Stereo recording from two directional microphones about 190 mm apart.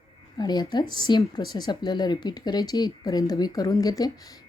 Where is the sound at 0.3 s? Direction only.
20° left (ahead or behind).